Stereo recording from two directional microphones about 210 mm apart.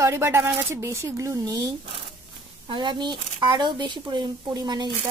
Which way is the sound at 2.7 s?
20° right (ahead or behind).